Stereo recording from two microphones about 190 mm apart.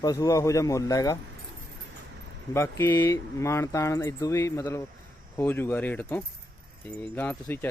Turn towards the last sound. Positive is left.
turn(degrees=10)  # may be behind; listen again after turning